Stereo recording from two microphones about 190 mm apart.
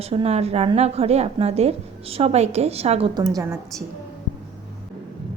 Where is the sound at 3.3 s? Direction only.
15° right (ahead or behind).